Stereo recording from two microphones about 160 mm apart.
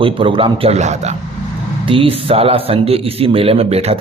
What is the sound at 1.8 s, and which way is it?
A man's voice, 35° right (ahead or behind).